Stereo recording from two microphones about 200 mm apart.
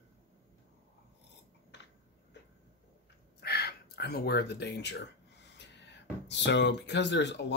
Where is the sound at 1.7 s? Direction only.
60° left (ahead or behind).